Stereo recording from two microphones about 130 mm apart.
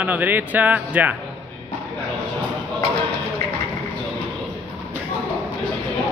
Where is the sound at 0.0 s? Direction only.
10° right (ahead or behind).